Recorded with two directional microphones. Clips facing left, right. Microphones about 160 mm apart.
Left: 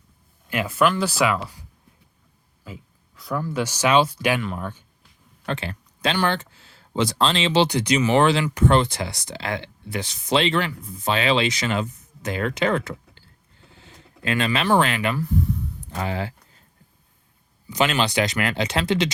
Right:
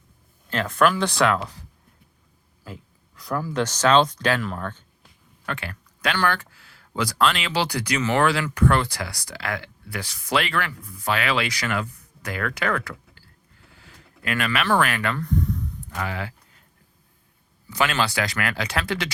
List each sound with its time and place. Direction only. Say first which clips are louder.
0.5 s speech: even; 5° left (ahead or behind)
2.6 s a sound: even; centre (ahead or behind)
3.6 s speech: right 1 dB; 10° left (ahead or behind)
5.5 s speech: left 4 dB; 25° left (ahead or behind)
15.1 s speech: left 1 dB; 5° left (ahead or behind)
15.9 s a sound: left 3 dB; 30° left (ahead or behind)
17.7 s speech: left 2 dB; 20° left (ahead or behind)